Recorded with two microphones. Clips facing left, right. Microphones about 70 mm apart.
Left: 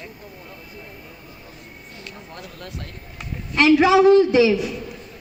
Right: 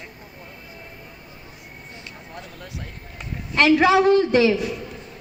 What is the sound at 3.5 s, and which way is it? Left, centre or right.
Speech, right.